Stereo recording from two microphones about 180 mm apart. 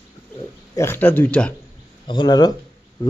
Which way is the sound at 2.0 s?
25° left (ahead or behind).